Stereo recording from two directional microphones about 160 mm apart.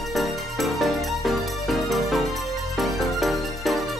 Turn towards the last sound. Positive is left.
turn(degrees=0)  # may be behind; listen again after turning